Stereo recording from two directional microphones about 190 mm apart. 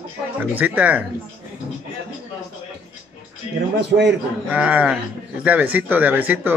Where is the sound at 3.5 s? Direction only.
30° left (ahead or behind).